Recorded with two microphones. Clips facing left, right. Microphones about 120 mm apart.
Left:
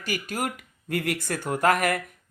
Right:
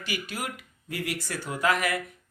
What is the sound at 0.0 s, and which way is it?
Speech, 45° left (ahead or behind).